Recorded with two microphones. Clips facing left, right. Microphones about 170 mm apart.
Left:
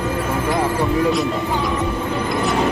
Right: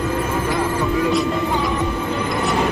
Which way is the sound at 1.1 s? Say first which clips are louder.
Right 1 dB; centre (ahead or behind).